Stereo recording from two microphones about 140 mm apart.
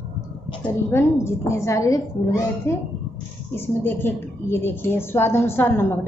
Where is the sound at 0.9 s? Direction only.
20° left (ahead or behind).